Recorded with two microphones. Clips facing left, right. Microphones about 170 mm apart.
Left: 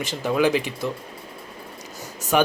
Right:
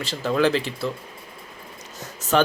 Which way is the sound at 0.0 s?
15° left (ahead or behind).